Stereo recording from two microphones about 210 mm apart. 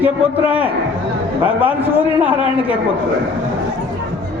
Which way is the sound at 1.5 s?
10° right (ahead or behind).